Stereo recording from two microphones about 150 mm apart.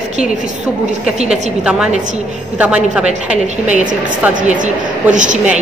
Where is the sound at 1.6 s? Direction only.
5° right (ahead or behind).